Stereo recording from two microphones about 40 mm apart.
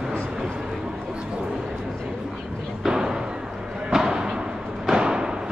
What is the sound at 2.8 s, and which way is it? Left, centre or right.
Thump, centre.